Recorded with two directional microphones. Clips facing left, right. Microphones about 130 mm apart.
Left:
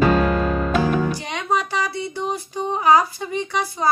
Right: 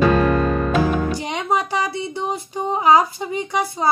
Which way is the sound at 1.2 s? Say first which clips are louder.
Right 2 dB; 20° right (ahead or behind).